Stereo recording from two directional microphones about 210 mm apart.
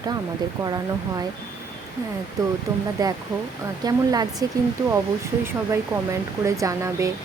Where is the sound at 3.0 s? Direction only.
15° right (ahead or behind).